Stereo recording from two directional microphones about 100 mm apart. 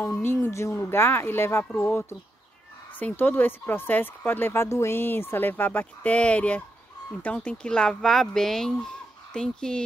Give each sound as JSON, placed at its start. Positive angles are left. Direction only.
{"t": 0.0, "sound": "speech", "side_deg": 25}